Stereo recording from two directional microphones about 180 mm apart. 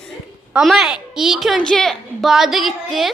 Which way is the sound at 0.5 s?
Centre (ahead or behind).